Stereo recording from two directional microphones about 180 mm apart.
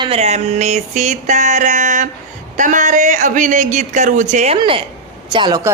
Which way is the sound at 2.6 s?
45° right (ahead or behind).